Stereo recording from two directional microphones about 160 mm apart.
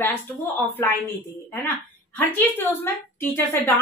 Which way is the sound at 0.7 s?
15° left (ahead or behind).